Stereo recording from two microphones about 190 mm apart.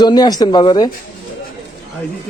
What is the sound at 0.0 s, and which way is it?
Speech, 20° left (ahead or behind).